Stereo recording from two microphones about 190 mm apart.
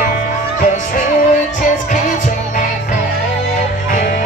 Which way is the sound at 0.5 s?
45° left (ahead or behind).